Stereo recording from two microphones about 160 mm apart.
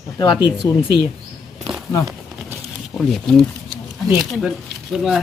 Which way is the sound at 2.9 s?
5° left (ahead or behind).